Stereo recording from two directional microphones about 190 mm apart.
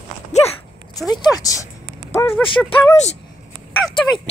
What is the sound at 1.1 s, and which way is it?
Speech, 20° left (ahead or behind).